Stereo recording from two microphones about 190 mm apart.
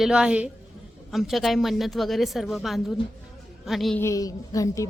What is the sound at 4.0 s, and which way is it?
Speech, 15° left (ahead or behind).